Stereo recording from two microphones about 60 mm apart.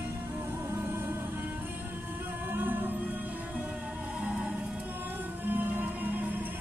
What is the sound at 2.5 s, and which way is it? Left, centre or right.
Music, right.